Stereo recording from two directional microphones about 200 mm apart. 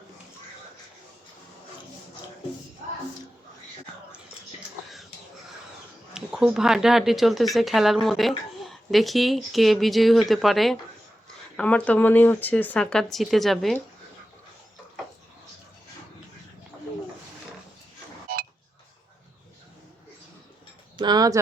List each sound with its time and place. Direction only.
6.1 s speech: 5° right (ahead or behind)
18.3 s chink: 45° right (ahead or behind)
20.9 s speech: 20° right (ahead or behind)